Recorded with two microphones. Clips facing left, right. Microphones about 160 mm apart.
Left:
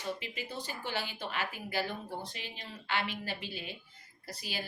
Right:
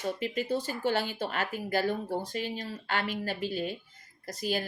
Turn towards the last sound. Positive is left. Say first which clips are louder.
# right 9 dB
turn(degrees=-45)  # may be behind; listen again after turning